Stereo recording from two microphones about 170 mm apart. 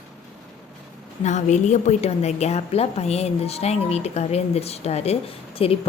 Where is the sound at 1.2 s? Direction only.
45° left (ahead or behind).